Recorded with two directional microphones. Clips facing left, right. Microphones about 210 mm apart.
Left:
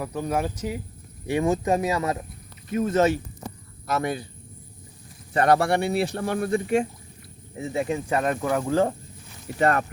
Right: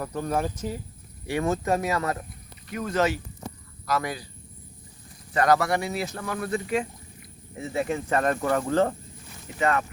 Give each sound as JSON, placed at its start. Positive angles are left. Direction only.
{"t": 0.0, "sound": "speech", "side_deg": 10}
{"t": 5.4, "sound": "speech", "side_deg": 30}
{"t": 6.3, "sound": "speech", "side_deg": 45}
{"t": 7.6, "sound": "speech", "side_deg": 20}
{"t": 9.6, "sound": "speech", "side_deg": 40}